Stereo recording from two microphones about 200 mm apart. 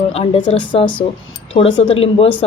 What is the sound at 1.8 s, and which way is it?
Speech, 30° left (ahead or behind).